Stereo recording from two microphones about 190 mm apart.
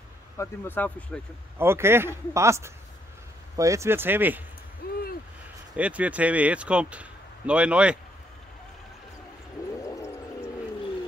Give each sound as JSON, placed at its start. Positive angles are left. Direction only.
{"t": 0.4, "sound": "speech", "side_deg": 10}
{"t": 1.6, "sound": "speech", "side_deg": -10}
{"t": 4.8, "sound": "speech", "side_deg": 55}
{"t": 5.8, "sound": "speech", "side_deg": -5}
{"t": 9.8, "sound": "music", "side_deg": 15}